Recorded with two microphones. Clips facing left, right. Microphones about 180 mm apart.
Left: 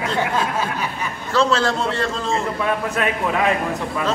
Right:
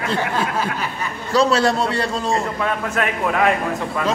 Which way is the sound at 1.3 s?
10° right (ahead or behind).